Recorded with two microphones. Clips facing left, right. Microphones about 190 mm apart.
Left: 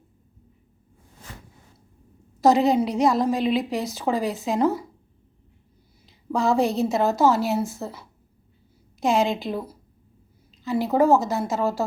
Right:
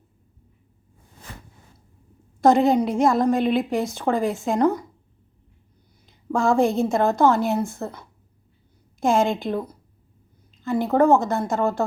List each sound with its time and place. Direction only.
1.3 s a sound: 60° right (ahead or behind)
2.4 s a woman's voice: centre (ahead or behind)
6.1 s a woman's voice: centre (ahead or behind)